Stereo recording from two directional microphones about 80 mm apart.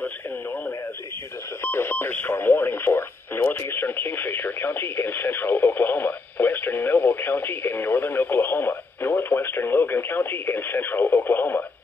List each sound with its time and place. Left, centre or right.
0.0 s radio: left